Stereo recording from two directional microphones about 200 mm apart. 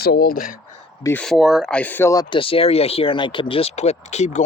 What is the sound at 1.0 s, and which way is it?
Speech, 5° left (ahead or behind).